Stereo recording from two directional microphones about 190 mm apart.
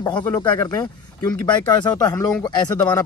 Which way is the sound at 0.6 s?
20° left (ahead or behind).